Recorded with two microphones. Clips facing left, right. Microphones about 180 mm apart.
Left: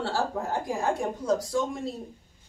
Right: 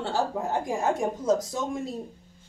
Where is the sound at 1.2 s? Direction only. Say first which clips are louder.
Right 2 dB; 20° right (ahead or behind).